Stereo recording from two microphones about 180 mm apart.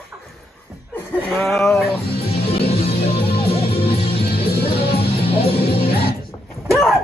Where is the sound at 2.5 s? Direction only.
35° left (ahead or behind).